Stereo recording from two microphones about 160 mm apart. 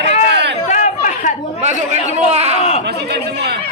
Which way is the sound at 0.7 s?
50° left (ahead or behind).